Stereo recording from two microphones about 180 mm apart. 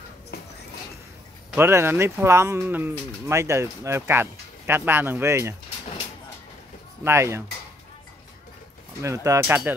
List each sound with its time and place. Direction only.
1.5 s speech: 15° right (ahead or behind)
7.1 s speech: 15° right (ahead or behind)
9.0 s speech: 15° right (ahead or behind)